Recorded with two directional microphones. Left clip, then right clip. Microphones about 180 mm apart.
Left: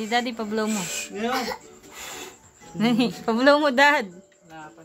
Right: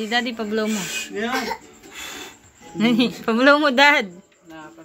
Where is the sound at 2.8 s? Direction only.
Centre (ahead or behind).